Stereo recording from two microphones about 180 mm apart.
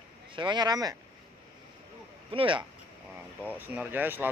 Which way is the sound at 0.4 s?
25° right (ahead or behind).